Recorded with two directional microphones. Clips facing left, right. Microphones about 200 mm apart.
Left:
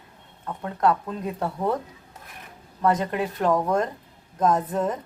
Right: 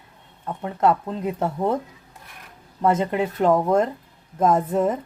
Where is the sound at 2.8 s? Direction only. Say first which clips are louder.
Right 3 dB; 25° right (ahead or behind).